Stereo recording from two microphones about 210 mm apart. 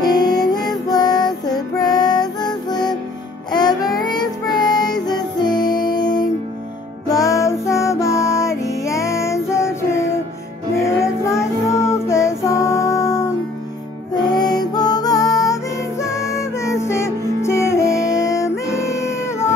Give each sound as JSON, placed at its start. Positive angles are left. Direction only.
{"t": 0.0, "sound": "music", "side_deg": 20}
{"t": 3.5, "sound": "child singing", "side_deg": 20}
{"t": 7.1, "sound": "music", "side_deg": 15}
{"t": 11.0, "sound": "child singing", "side_deg": 15}
{"t": 14.4, "sound": "music", "side_deg": 20}